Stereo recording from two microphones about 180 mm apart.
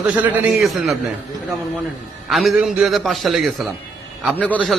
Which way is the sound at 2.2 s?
Centre (ahead or behind).